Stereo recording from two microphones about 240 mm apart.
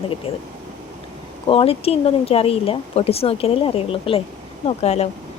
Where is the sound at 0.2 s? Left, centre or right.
Left.